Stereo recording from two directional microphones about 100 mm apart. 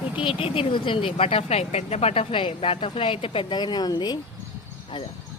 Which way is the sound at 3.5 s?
45° left (ahead or behind).